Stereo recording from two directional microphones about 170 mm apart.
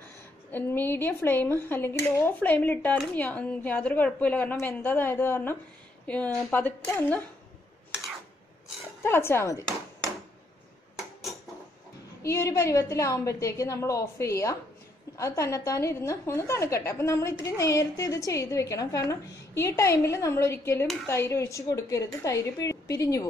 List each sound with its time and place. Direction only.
0.5 s a woman's voice: 10° left (ahead or behind)
9.0 s a woman's voice: 15° left (ahead or behind)
12.2 s a woman's voice: 15° left (ahead or behind)
20.8 s speech: centre (ahead or behind)
21.1 s a woman's voice: 15° left (ahead or behind)